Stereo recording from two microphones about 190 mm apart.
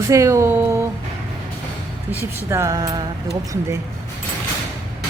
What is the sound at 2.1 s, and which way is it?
Speech, 10° right (ahead or behind).